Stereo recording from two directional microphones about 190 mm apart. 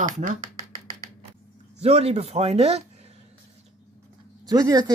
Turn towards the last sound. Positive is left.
turn(degrees=-20)  # may be behind; listen again after turning